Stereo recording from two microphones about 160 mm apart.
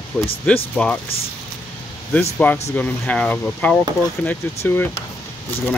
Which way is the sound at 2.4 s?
10° left (ahead or behind).